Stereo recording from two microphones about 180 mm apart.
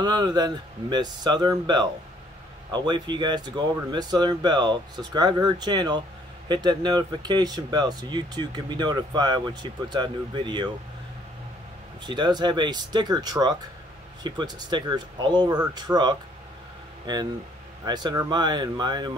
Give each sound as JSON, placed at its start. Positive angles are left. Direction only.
{"t": 0.0, "sound": "speech", "side_deg": -25}
{"t": 12.0, "sound": "speech", "side_deg": -25}